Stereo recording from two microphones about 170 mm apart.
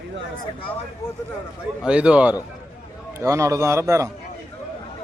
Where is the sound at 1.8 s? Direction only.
5° right (ahead or behind).